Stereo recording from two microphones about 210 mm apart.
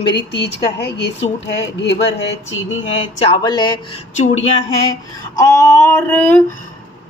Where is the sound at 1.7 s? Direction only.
55° left (ahead or behind).